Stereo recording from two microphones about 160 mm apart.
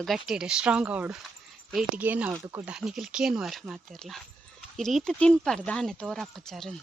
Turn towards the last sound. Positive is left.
turn(degrees=5)  # may be behind; listen again after turning